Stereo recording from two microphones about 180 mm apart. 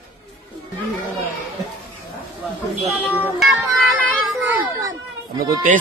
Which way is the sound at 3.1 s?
10° left (ahead or behind).